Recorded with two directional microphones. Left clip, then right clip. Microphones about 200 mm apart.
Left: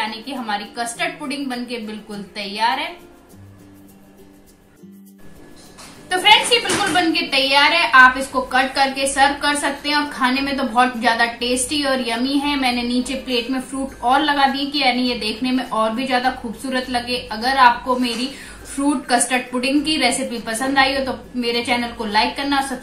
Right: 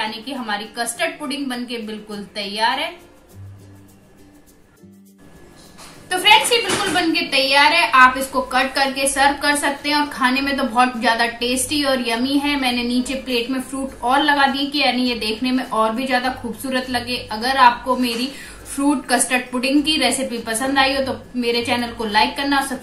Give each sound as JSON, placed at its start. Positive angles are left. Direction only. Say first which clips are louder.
{"t": 0.0, "sound": "a woman's voice", "louder": "even", "side_deg": -10}
{"t": 6.0, "sound": "a woman's voice", "louder": "even", "side_deg": -10}